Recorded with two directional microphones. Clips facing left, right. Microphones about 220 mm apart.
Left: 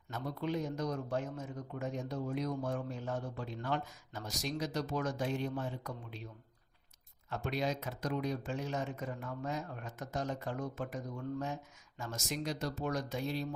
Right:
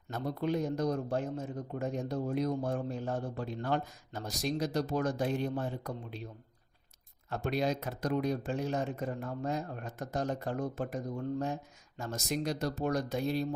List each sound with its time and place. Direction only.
0.1 s speech: 40° right (ahead or behind)
7.3 s speech: 35° right (ahead or behind)